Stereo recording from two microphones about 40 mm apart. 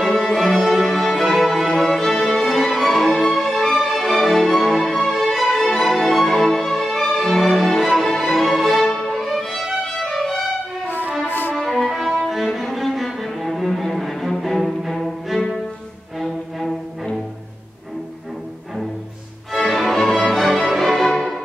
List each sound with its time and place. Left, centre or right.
0.0 s music: centre
9.1 s violin: centre
9.4 s music: centre
11.2 s music: left
11.5 s music: centre
12.9 s cello: centre
14.4 s music: centre
16.2 s music: centre
19.5 s music: centre